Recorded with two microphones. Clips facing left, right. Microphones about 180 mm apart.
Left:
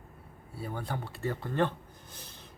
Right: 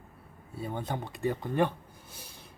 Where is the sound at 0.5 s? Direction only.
20° right (ahead or behind).